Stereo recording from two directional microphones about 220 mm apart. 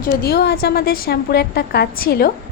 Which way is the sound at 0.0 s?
45° left (ahead or behind).